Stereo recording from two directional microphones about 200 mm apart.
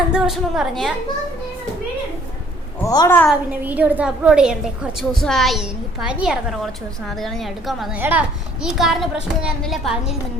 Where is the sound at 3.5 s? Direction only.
10° right (ahead or behind).